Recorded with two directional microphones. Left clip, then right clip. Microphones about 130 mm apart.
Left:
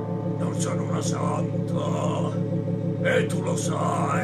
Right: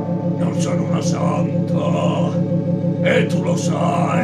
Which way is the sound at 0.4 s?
15° left (ahead or behind).